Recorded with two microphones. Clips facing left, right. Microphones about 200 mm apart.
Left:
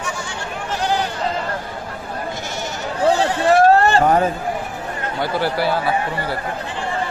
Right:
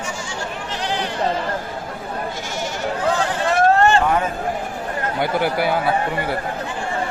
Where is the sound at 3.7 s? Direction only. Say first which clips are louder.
Left 2 dB; 35° left (ahead or behind).